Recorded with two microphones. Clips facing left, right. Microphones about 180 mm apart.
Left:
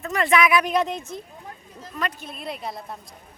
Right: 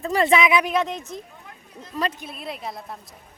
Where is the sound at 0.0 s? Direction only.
30° right (ahead or behind).